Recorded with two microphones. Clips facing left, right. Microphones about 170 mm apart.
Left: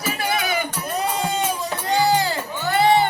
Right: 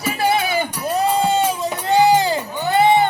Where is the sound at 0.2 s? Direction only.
30° right (ahead or behind).